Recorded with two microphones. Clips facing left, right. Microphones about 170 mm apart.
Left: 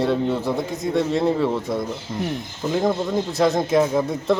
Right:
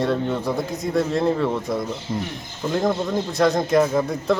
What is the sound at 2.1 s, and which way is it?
Speech, 10° right (ahead or behind).